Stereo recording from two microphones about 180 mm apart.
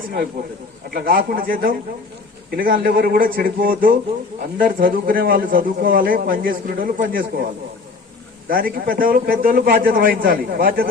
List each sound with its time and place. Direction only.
0.9 s speech: 55° right (ahead or behind)
8.4 s speech: 50° right (ahead or behind)